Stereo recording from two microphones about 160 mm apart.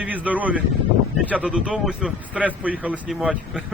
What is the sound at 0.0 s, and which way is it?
A man's voice, 10° right (ahead or behind).